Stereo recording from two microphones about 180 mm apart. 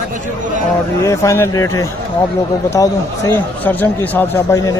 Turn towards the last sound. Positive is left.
turn(degrees=15)  # may be behind; listen again after turning